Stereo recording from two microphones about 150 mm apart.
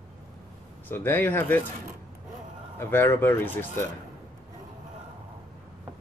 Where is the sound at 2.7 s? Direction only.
15° left (ahead or behind).